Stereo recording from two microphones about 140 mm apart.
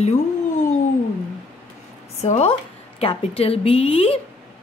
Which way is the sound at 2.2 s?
50° left (ahead or behind).